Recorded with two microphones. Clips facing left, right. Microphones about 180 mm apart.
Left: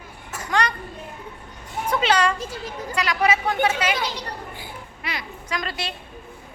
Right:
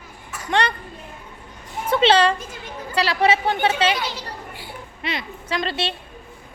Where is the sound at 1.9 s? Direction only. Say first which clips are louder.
Right 4 dB; 30° right (ahead or behind).